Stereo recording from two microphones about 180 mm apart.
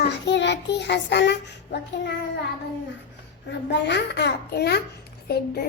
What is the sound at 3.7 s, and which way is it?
Child singing, 75° left (ahead or behind).